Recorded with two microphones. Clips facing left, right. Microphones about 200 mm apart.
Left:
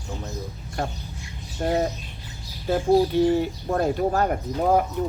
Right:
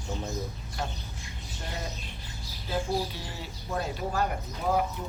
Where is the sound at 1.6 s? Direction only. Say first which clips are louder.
Left 15 dB; 50° left (ahead or behind).